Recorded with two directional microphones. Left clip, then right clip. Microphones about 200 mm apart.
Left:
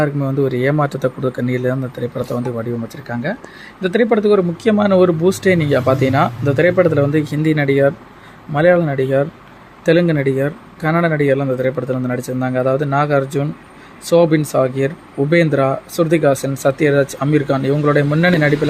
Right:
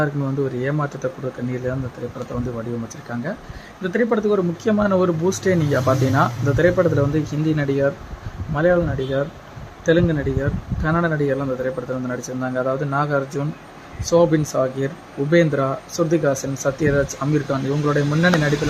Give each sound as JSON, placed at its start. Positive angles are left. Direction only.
{"t": 0.0, "sound": "speech", "side_deg": 20}
{"t": 2.3, "sound": "speech", "side_deg": 25}
{"t": 3.1, "sound": "speech", "side_deg": 10}